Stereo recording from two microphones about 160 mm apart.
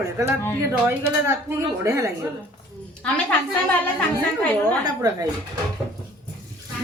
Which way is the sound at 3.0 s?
10° left (ahead or behind).